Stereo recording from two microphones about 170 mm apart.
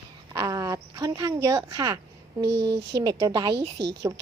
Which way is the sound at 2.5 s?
90° right.